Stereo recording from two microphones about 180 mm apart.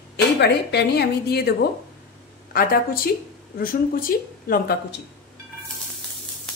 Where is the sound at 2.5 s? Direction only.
55° left (ahead or behind).